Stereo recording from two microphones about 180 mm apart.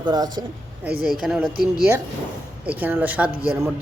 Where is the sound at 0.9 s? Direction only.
55° right (ahead or behind).